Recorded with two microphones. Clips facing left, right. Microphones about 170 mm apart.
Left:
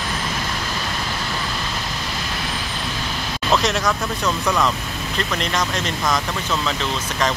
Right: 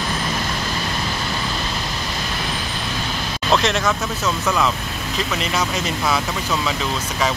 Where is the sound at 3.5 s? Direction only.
Centre (ahead or behind).